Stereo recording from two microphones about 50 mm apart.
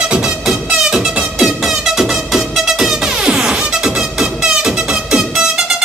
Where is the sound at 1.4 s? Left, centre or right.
Centre.